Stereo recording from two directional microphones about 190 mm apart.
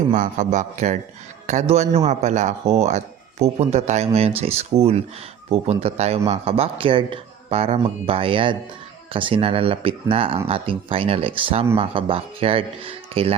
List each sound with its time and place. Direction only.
0.1 s a man's voice: 40° right (ahead or behind)